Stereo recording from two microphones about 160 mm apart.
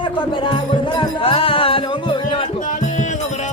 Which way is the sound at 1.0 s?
35° left (ahead or behind).